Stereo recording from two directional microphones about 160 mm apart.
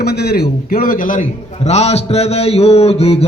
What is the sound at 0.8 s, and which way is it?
Speech, 60° left (ahead or behind).